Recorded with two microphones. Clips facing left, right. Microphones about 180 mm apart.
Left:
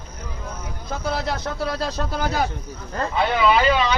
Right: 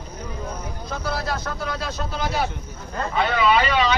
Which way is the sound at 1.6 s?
40° left (ahead or behind).